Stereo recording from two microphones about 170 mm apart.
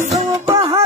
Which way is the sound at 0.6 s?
20° right (ahead or behind).